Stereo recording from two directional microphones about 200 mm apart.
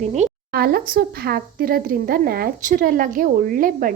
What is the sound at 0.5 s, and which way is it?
Speech, 50° right (ahead or behind).